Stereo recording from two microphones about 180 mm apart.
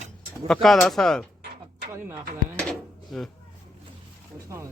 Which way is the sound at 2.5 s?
5° left (ahead or behind).